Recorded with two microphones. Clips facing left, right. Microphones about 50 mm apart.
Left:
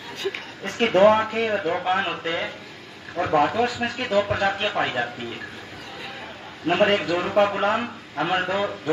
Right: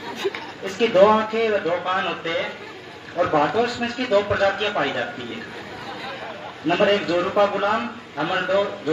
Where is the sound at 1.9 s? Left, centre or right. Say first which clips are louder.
Right 1 dB; centre.